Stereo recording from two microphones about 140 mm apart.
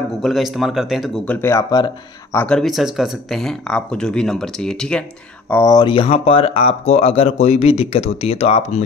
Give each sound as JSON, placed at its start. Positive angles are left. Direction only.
{"t": 0.2, "sound": "speech", "side_deg": 0}
{"t": 2.3, "sound": "speech", "side_deg": 5}
{"t": 5.5, "sound": "speech", "side_deg": 20}
{"t": 5.8, "sound": "speech", "side_deg": 35}